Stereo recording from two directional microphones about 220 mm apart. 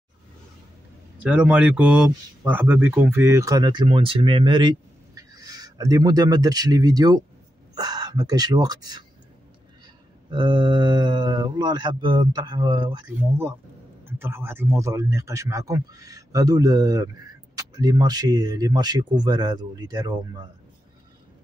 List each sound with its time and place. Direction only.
1.2 s a man's voice: 5° right (ahead or behind)
10.3 s a man's voice: 20° right (ahead or behind)